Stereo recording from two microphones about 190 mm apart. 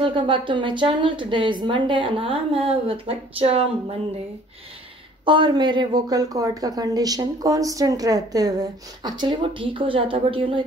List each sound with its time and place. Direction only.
0.0 s speech: 25° right (ahead or behind)
5.2 s speech: 25° right (ahead or behind)